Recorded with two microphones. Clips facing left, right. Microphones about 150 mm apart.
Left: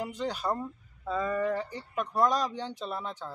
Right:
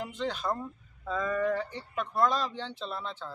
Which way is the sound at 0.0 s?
10° left (ahead or behind).